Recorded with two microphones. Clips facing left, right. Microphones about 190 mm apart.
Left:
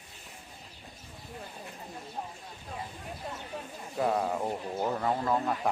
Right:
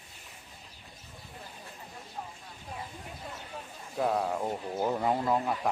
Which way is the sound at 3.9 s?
Centre (ahead or behind).